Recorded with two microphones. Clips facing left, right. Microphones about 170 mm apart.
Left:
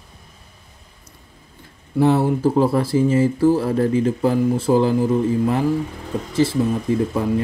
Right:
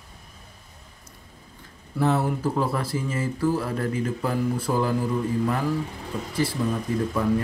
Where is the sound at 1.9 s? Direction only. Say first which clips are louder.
Left 7 dB; 30° left (ahead or behind).